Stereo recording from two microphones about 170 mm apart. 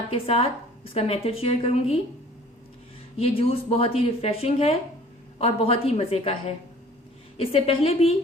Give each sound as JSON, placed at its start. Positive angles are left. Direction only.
{"t": 0.1, "sound": "speech", "side_deg": 35}
{"t": 3.2, "sound": "speech", "side_deg": 35}
{"t": 7.3, "sound": "speech", "side_deg": 35}